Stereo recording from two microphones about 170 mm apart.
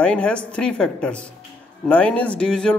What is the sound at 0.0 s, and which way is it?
Speech, 5° left (ahead or behind).